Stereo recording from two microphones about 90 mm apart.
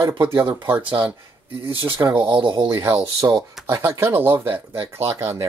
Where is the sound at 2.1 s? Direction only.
65° right (ahead or behind).